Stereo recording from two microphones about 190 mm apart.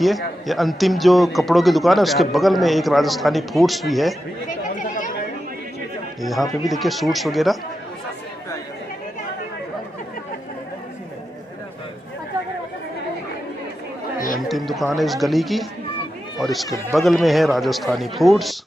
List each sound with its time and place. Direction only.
0.0 s a man's voice: centre (ahead or behind)
4.5 s chatter: 45° left (ahead or behind)
6.6 s a man's voice: centre (ahead or behind)
14.1 s chatter: 45° left (ahead or behind)
14.5 s a man's voice: centre (ahead or behind)